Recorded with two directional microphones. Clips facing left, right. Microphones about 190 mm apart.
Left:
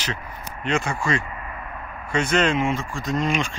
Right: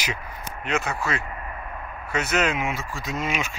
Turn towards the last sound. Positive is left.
turn(degrees=-5)  # may be behind; listen again after turning